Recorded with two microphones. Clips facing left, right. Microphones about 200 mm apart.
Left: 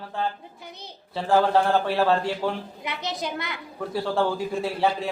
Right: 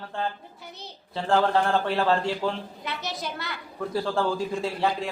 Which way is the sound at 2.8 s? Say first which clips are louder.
Left 3 dB; 15° left (ahead or behind).